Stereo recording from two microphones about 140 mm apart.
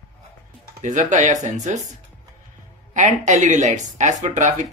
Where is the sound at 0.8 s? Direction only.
60° right (ahead or behind).